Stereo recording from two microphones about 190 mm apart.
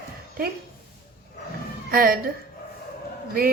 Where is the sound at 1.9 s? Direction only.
50° right (ahead or behind).